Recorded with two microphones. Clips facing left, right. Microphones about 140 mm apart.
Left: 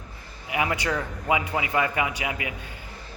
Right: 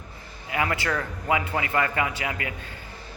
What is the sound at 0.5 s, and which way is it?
A man's voice, 15° left (ahead or behind).